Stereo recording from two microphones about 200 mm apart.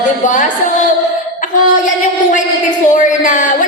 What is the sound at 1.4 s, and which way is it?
Music, 40° left (ahead or behind).